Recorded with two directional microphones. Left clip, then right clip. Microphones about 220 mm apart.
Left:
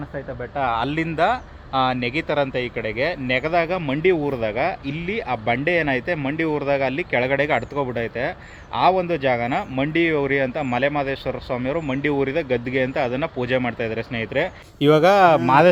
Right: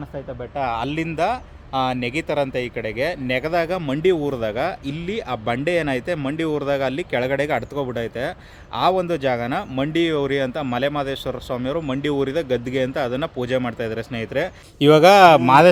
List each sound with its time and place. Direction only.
0.5 s speech: 10° right (ahead or behind)
14.8 s speech: 30° right (ahead or behind)